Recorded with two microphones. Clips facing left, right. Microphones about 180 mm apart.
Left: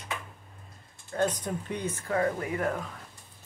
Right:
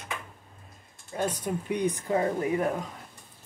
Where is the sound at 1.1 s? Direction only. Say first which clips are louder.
Left 1 dB; 10° right (ahead or behind).